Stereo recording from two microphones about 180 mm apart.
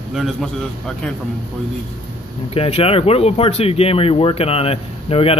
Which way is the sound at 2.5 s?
35° left (ahead or behind).